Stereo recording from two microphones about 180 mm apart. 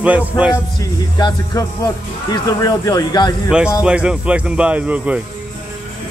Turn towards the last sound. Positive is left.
turn(degrees=-10)  # may be behind; listen again after turning